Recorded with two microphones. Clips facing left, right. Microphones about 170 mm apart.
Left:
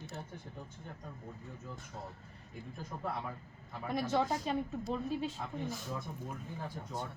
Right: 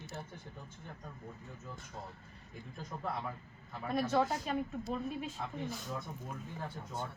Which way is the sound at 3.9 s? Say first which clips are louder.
Right 1 dB; 20° left (ahead or behind).